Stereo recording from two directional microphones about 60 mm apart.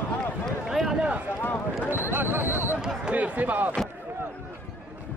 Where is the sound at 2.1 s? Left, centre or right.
Right.